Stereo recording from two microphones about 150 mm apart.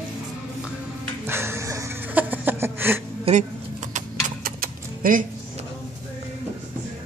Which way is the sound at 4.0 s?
65° right (ahead or behind).